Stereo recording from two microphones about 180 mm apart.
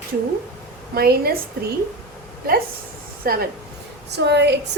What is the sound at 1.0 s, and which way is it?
Speech, 60° right (ahead or behind).